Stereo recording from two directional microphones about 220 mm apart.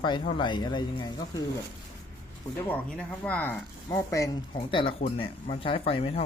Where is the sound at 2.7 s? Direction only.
5° left (ahead or behind); by 6.2 s 25° left (ahead or behind).